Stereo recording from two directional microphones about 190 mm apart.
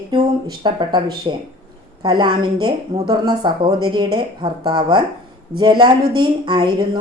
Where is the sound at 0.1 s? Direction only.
25° right (ahead or behind).